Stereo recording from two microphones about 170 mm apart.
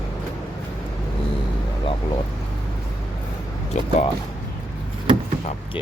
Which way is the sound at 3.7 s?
45° left (ahead or behind).